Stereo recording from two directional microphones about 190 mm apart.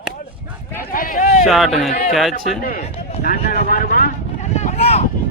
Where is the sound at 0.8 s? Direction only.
45° left (ahead or behind).